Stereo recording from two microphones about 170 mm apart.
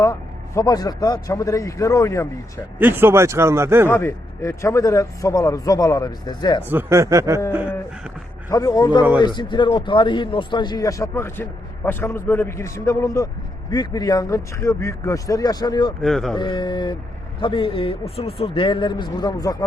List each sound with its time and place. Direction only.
0.0 s a man's voice: 15° left (ahead or behind)
2.7 s speech: 10° right (ahead or behind)
3.8 s a man's voice: 15° left (ahead or behind)
6.7 s speech: 15° right (ahead or behind)
8.4 s a man's voice: 20° left (ahead or behind)
16.0 s speech: centre (ahead or behind)
16.4 s a man's voice: 25° left (ahead or behind)